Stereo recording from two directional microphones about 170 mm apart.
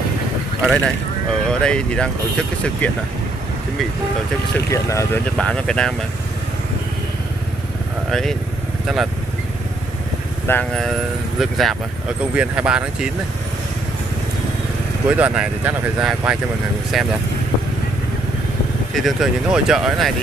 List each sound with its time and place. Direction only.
0.6 s speech: 5° right (ahead or behind)
4.6 s speech: 15° left (ahead or behind)
5.4 s speech: 5° left (ahead or behind)
8.1 s speech: centre (ahead or behind)
10.4 s speech: 10° left (ahead or behind)
15.0 s speech: 10° right (ahead or behind)
18.9 s speech: centre (ahead or behind)